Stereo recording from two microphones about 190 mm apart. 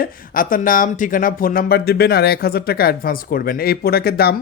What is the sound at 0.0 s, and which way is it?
Speech, 50° left (ahead or behind).